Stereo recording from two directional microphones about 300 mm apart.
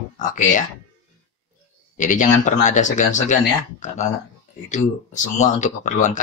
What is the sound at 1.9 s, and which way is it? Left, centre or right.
Speech, left.